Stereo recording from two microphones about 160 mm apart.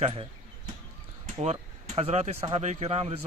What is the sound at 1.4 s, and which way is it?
Speech, 45° right (ahead or behind).